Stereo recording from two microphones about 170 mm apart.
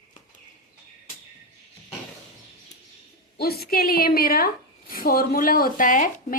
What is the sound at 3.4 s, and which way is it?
A woman's voice, 65° left (ahead or behind).